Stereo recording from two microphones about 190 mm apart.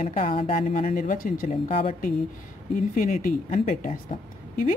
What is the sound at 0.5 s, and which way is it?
A woman's voice, 45° left (ahead or behind).